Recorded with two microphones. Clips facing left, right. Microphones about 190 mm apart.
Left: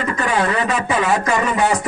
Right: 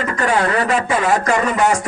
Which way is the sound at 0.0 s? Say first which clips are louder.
Right 1 dB; 45° right (ahead or behind).